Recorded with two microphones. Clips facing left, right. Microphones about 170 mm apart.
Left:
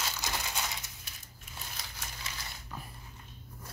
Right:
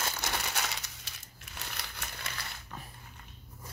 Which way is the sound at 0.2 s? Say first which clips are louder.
Right 1 dB; 75° right (ahead or behind).